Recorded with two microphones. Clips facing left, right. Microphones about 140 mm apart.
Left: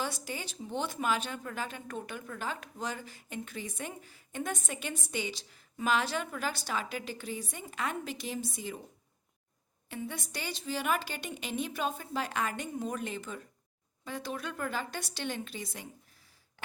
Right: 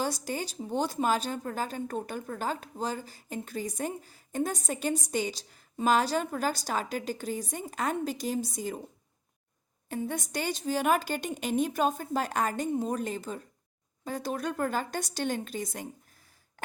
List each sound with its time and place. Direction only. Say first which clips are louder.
0.0 s speech: right 5 dB; 40° right (ahead or behind)
9.9 s a woman's voice: right 6 dB; 45° right (ahead or behind)